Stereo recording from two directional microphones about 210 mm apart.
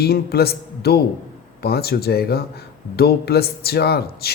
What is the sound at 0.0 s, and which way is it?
Speech, 50° left (ahead or behind).